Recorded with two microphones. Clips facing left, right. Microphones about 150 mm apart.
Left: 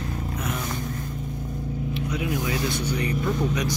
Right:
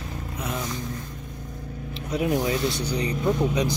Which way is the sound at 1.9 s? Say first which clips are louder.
Right 5 dB; 40° right (ahead or behind).